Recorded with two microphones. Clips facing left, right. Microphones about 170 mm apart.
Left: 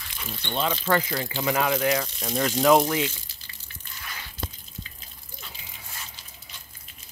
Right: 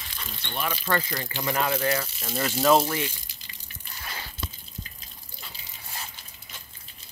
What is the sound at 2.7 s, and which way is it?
Speech, 15° left (ahead or behind).